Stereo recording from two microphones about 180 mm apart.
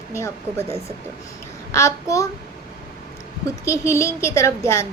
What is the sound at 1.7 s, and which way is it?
Speech, 15° left (ahead or behind).